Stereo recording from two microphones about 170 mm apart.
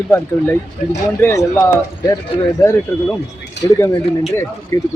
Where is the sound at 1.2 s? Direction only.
15° left (ahead or behind).